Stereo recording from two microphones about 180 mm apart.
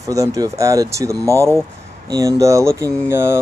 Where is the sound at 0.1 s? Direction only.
20° right (ahead or behind).